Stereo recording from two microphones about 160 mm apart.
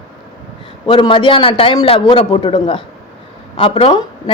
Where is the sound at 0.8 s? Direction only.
30° left (ahead or behind).